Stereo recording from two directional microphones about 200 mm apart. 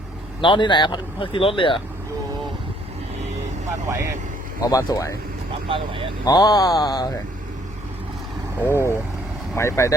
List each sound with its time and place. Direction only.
0.4 s speech: 25° left (ahead or behind)
3.8 s speech: 15° right (ahead or behind)
4.6 s speech: 15° left (ahead or behind)
5.6 s speech: 25° right (ahead or behind)
6.2 s speech: 20° left (ahead or behind)
8.6 s speech: 15° left (ahead or behind)